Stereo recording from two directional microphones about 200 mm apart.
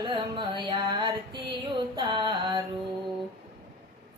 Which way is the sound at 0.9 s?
25° right (ahead or behind).